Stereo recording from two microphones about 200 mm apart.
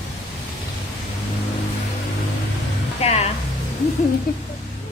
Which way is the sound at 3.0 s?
35° left (ahead or behind).